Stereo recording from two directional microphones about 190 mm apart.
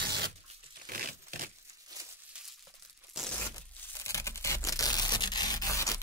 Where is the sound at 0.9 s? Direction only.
45° right (ahead or behind).